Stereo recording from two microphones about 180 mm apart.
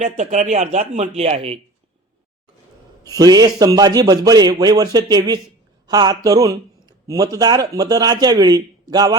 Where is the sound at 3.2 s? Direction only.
20° right (ahead or behind).